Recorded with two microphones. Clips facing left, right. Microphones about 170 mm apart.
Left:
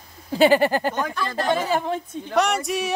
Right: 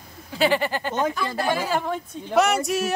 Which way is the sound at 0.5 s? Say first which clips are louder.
Left 5 dB; 45° left (ahead or behind).